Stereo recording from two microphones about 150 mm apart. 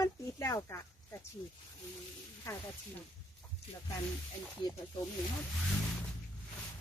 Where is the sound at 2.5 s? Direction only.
20° left (ahead or behind).